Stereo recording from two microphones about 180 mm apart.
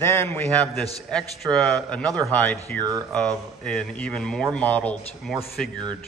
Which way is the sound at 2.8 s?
20° right (ahead or behind).